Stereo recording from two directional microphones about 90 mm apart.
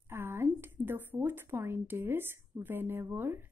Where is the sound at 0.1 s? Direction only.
25° right (ahead or behind).